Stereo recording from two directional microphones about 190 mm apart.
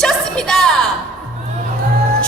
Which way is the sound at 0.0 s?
5° left (ahead or behind).